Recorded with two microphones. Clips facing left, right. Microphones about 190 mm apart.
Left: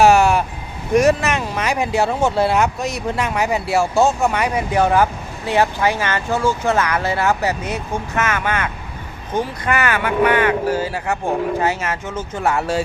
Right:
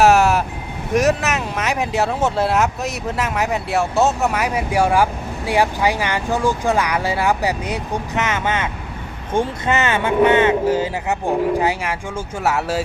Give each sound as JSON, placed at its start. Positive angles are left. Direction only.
{"t": 0.0, "sound": "vehicle", "side_deg": 0}
{"t": 0.9, "sound": "speech", "side_deg": 0}